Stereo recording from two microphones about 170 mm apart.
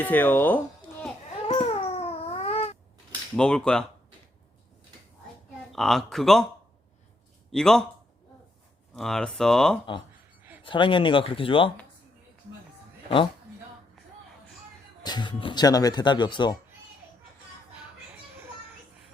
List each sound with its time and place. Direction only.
0.0 s speech: 10° left (ahead or behind)
1.5 s cat: 40° left (ahead or behind)
3.3 s speech: 5° left (ahead or behind)
5.7 s speech: centre (ahead or behind)
7.5 s speech: 5° left (ahead or behind)
9.0 s speech: centre (ahead or behind)
10.6 s speech: 30° left (ahead or behind)
15.0 s speech: 25° left (ahead or behind)